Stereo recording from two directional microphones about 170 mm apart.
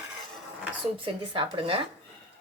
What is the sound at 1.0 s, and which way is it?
Speech, 30° right (ahead or behind).